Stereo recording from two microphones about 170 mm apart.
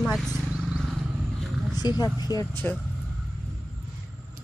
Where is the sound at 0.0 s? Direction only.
Centre (ahead or behind).